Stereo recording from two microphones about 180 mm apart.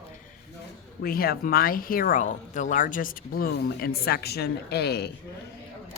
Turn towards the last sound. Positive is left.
turn(degrees=65)  # may be behind; listen again after turning